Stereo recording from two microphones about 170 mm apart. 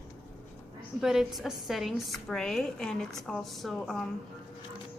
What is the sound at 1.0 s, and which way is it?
A woman's voice, centre (ahead or behind).